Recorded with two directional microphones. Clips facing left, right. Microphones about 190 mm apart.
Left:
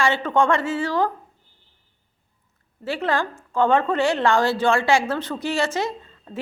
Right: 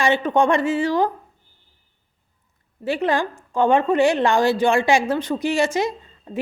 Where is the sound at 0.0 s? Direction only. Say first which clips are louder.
Right 2 dB; 15° right (ahead or behind).